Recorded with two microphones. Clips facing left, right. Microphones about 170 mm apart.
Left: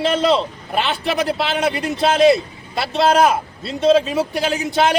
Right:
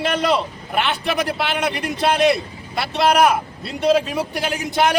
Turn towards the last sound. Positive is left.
turn(degrees=25)  # may be behind; listen again after turning